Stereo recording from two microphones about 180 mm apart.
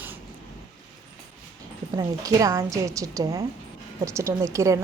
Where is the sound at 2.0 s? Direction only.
20° right (ahead or behind).